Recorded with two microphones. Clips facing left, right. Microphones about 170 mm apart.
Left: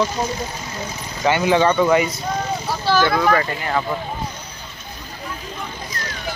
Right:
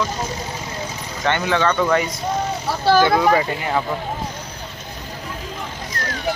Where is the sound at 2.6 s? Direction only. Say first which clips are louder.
Right 5 dB; 65° right (ahead or behind).